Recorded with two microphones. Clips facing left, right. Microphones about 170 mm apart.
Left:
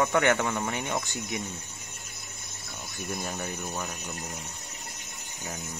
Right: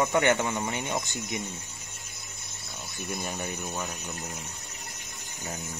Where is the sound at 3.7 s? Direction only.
Centre (ahead or behind).